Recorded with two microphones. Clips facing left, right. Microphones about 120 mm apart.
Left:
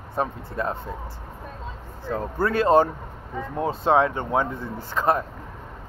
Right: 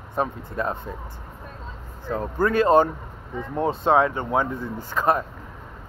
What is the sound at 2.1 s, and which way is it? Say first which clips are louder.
Speech: right 2 dB; 10° right (ahead or behind).